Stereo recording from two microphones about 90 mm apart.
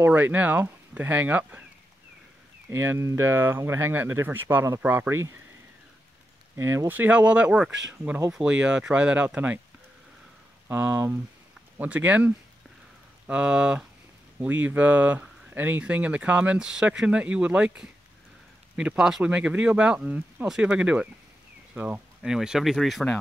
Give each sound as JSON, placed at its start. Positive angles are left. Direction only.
{"t": 0.0, "sound": "speech", "side_deg": -20}
{"t": 2.7, "sound": "speech", "side_deg": -30}
{"t": 6.5, "sound": "speech", "side_deg": -30}
{"t": 10.7, "sound": "speech", "side_deg": -25}